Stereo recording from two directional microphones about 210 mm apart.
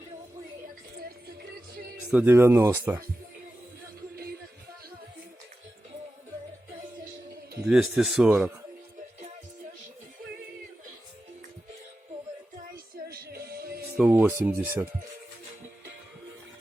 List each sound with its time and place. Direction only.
1.4 s music: 45° right (ahead or behind)
2.0 s speech: 5° right (ahead or behind)
4.1 s music: 45° right (ahead or behind)
7.6 s speech: 5° right (ahead or behind)
13.1 s music: 50° right (ahead or behind)
13.9 s speech: 5° right (ahead or behind)